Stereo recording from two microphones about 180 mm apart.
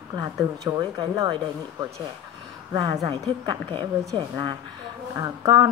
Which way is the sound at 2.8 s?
25° right (ahead or behind).